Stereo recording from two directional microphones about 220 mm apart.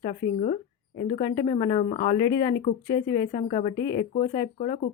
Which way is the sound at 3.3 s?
30° left (ahead or behind).